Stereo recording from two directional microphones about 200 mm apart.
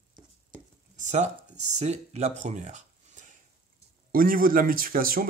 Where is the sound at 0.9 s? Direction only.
35° right (ahead or behind).